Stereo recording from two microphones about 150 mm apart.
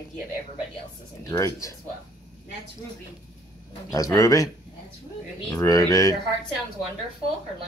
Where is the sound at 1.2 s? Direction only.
20° left (ahead or behind).